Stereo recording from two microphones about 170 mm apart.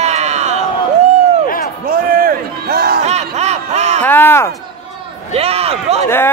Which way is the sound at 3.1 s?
40° right (ahead or behind).